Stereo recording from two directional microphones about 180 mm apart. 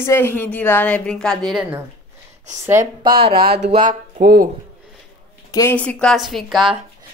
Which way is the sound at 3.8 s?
55° right (ahead or behind).